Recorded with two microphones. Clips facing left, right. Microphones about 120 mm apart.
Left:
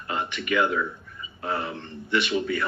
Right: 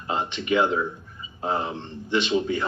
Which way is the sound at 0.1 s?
25° right (ahead or behind).